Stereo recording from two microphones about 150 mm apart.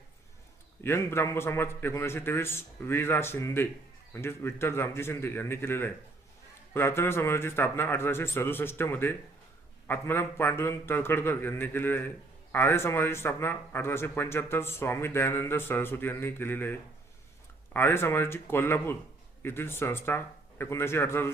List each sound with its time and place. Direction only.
0.8 s a man's voice: 15° left (ahead or behind)
17.7 s a man's voice: 15° left (ahead or behind)